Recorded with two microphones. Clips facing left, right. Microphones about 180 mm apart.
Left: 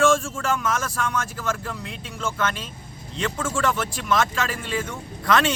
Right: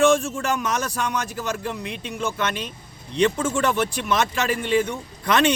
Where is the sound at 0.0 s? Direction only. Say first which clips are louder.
Right 2 dB; 20° right (ahead or behind).